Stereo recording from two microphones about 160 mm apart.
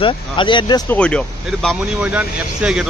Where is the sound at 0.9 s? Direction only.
5° left (ahead or behind).